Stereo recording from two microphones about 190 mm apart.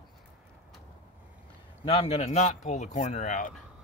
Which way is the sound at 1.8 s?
35° left (ahead or behind).